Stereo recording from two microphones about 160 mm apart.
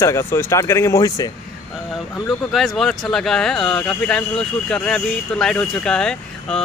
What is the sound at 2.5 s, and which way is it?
Speech, centre (ahead or behind).